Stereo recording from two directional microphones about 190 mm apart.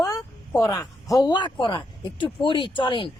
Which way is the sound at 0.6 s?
15° left (ahead or behind).